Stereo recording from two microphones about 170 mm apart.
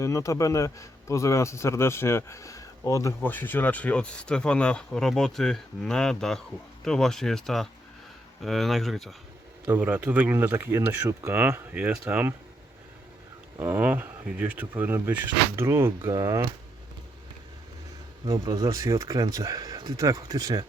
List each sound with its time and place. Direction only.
0.0 s a man's voice: 20° left (ahead or behind); by 12.3 s 5° right (ahead or behind)
13.6 s speech: 10° right (ahead or behind)
18.3 s speech: 20° right (ahead or behind)